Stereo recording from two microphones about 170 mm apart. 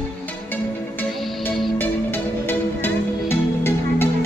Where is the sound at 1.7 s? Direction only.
10° left (ahead or behind).